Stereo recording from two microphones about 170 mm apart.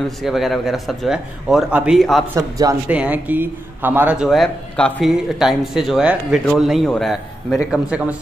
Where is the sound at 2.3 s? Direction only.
20° right (ahead or behind).